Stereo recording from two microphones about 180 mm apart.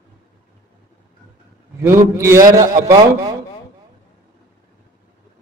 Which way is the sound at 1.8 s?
15° right (ahead or behind).